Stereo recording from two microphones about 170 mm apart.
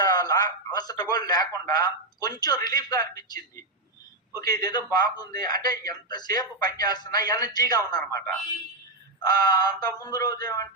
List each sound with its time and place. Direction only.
0.0 s speech: 20° left (ahead or behind)